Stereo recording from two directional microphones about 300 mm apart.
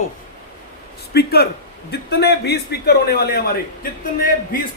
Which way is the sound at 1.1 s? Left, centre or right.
Left.